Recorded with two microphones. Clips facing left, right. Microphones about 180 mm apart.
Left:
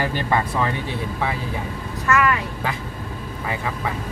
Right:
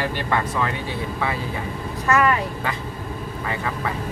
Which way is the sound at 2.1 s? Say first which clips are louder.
Right 1 dB; 35° right (ahead or behind).